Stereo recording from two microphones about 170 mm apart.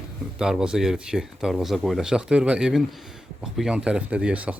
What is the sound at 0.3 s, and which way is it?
Speech, 5° right (ahead or behind).